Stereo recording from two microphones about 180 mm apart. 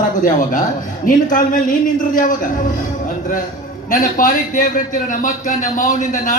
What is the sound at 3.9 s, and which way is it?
A man's voice, 50° left (ahead or behind).